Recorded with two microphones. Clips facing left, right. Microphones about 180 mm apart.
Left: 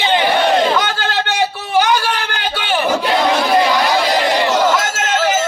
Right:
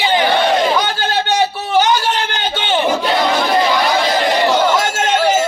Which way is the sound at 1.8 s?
20° right (ahead or behind).